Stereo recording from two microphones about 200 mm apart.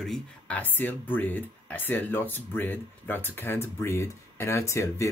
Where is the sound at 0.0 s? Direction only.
5° left (ahead or behind).